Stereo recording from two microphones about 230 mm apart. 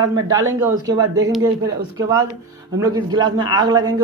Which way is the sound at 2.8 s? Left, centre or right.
Centre.